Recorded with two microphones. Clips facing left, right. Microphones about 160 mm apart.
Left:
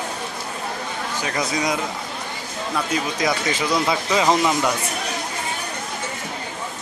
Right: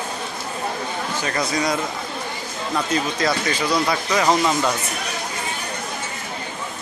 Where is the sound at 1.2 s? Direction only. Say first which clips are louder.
Even; 15° left (ahead or behind).